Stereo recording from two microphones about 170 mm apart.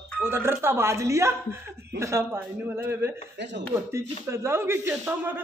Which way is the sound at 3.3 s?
90° right.